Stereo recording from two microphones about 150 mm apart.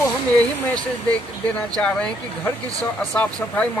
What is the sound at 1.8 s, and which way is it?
A man's voice, 5° left (ahead or behind).